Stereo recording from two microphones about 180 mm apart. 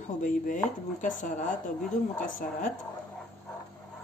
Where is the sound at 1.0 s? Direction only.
45° left (ahead or behind).